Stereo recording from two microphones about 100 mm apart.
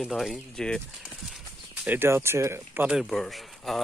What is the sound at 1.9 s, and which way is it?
Speech, 25° right (ahead or behind).